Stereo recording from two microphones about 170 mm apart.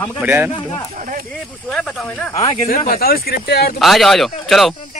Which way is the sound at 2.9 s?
60° left (ahead or behind).